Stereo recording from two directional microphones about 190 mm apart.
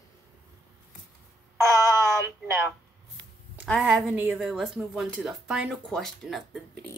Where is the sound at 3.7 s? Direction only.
Centre (ahead or behind).